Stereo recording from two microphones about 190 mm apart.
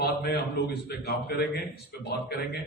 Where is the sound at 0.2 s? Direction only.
55° left (ahead or behind).